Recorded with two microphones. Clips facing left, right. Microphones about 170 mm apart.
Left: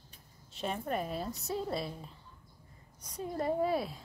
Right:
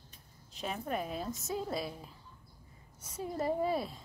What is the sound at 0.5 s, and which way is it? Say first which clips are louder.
Speech: left 2 dB; centre (ahead or behind).